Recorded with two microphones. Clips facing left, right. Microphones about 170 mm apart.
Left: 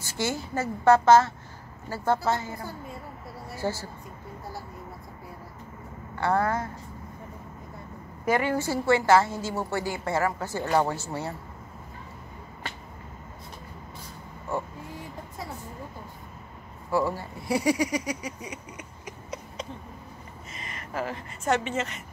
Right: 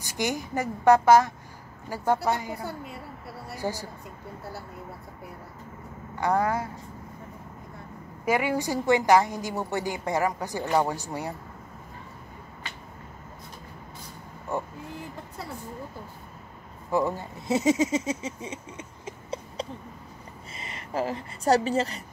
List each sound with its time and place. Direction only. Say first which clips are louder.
0.0 s a woman's voice: right 1 dB; 15° right (ahead or behind)
2.6 s a woman's voice: right 2 dB; 75° right (ahead or behind)
3.5 s a woman's voice: left 1 dB; 15° right (ahead or behind)
6.1 s a woman's voice: even; 15° right (ahead or behind)
8.3 s a woman's voice: even; 10° right (ahead or behind)
14.5 s speech: even; 15° right (ahead or behind)
16.9 s a woman's voice: even; 20° right (ahead or behind); by 22.0 s 35° right (ahead or behind)